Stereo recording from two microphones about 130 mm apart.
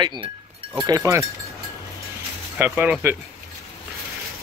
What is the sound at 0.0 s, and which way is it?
Speech, 35° right (ahead or behind).